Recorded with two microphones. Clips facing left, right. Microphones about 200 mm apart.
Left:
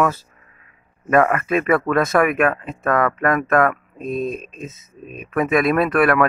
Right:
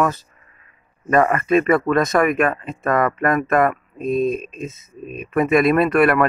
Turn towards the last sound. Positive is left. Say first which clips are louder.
# right 1 dB
turn(degrees=0)  # may be behind; listen again after turning